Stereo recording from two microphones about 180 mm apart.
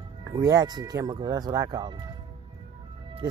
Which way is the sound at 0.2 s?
20° right (ahead or behind).